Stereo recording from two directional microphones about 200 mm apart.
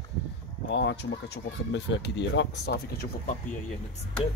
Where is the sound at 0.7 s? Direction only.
65° left (ahead or behind).